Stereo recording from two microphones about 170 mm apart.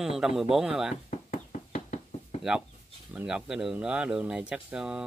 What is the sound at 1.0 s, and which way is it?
Knock, 50° left (ahead or behind).